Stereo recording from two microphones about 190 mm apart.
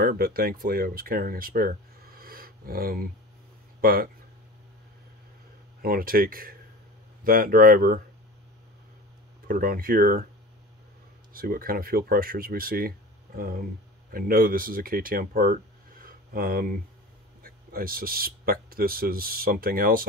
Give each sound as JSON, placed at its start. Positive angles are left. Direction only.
{"t": 0.0, "sound": "speech", "side_deg": -50}
{"t": 5.8, "sound": "speech", "side_deg": -50}
{"t": 9.5, "sound": "speech", "side_deg": -50}
{"t": 11.3, "sound": "speech", "side_deg": -50}